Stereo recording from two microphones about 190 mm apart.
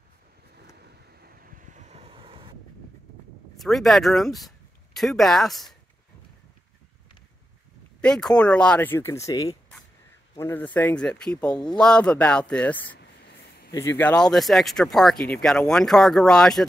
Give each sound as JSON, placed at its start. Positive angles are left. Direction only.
{"t": 1.0, "sound": "vehicle", "side_deg": -55}
{"t": 3.5, "sound": "speech", "side_deg": 0}
{"t": 8.0, "sound": "speech", "side_deg": 5}